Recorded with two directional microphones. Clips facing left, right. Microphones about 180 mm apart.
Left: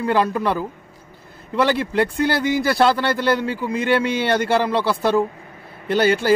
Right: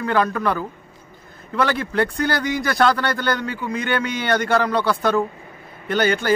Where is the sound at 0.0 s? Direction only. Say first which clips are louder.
Left 1 dB; 25° left (ahead or behind).